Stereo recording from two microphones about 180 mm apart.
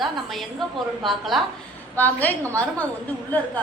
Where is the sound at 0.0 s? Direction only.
Centre (ahead or behind).